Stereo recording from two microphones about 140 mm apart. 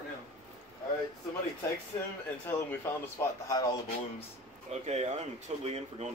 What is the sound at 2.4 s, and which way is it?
Speech, 15° left (ahead or behind).